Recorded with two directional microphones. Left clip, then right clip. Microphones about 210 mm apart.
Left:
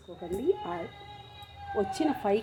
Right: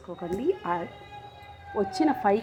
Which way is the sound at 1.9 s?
Centre (ahead or behind).